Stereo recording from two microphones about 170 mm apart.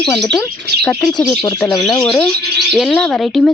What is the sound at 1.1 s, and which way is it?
Speech, 25° left (ahead or behind).